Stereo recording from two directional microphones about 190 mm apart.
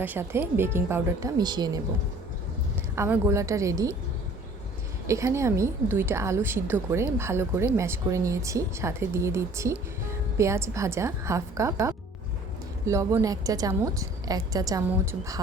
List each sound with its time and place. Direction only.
0.0 s a woman's voice: 10° right (ahead or behind)
2.9 s a woman's voice: 15° right (ahead or behind)
5.0 s a woman's voice: 15° right (ahead or behind)